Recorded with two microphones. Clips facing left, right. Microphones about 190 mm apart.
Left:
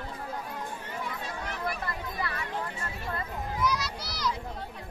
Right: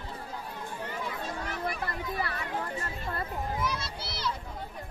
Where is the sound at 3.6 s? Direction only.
25° right (ahead or behind).